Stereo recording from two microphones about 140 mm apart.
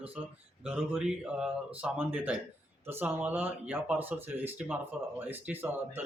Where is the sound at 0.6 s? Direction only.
5° right (ahead or behind).